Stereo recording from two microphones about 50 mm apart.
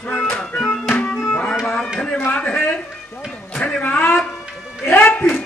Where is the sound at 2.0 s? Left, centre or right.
Centre.